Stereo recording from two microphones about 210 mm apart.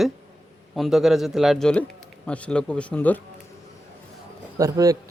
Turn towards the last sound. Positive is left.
turn(degrees=-15)  # may be behind; listen again after turning